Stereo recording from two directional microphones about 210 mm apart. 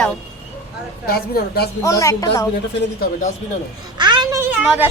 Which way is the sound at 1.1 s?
45° left (ahead or behind).